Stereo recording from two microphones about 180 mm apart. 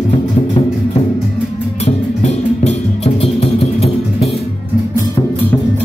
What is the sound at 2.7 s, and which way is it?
Music, 35° left (ahead or behind).